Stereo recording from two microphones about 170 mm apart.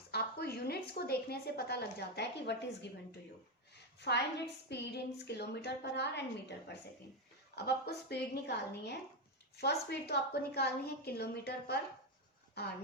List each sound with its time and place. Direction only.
0.1 s a woman's voice: 65° left (ahead or behind); by 2.9 s 85° left
4.0 s a woman's voice: 80° left
7.5 s a woman's voice: 75° left (ahead or behind)